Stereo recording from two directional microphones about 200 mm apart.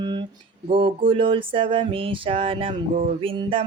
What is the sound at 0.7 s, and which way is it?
Mantra, 25° right (ahead or behind).